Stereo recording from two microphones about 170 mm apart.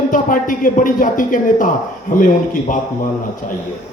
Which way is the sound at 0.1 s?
50° left (ahead or behind).